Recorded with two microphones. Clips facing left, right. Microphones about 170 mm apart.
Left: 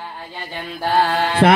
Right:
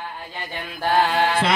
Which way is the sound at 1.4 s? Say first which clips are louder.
Left 8 dB; 55° left (ahead or behind).